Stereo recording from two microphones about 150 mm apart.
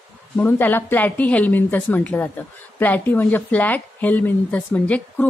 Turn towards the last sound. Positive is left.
turn(degrees=10)  # may be behind; listen again after turning